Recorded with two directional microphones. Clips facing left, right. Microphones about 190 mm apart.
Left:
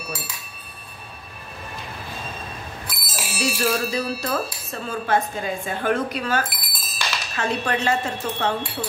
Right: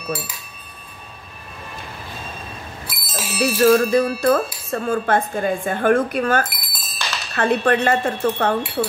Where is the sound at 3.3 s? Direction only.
55° right (ahead or behind).